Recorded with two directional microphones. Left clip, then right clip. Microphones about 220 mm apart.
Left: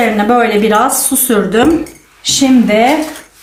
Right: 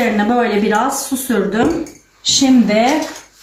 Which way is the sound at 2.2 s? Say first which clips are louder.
Left 2 dB; 25° left (ahead or behind).